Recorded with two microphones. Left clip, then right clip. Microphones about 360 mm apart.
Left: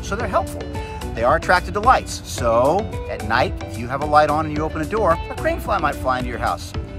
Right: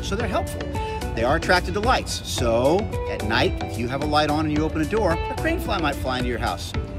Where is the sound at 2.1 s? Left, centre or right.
Centre.